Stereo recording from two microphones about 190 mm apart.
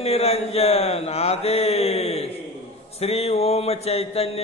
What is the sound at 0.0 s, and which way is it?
Mantra, 30° left (ahead or behind).